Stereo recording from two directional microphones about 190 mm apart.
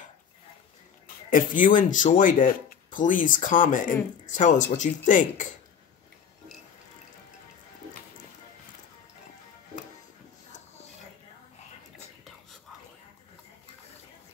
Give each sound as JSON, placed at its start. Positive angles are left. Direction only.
{"t": 1.3, "sound": "speech", "side_deg": 45}